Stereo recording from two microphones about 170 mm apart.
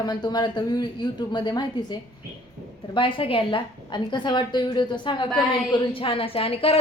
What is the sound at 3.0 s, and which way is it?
A woman's voice, 30° left (ahead or behind).